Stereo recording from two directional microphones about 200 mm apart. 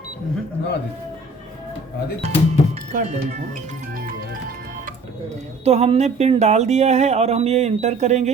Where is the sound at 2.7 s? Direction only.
35° right (ahead or behind).